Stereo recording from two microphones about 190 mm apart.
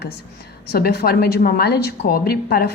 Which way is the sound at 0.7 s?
55° left (ahead or behind).